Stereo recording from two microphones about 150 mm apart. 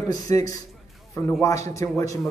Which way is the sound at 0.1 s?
25° left (ahead or behind).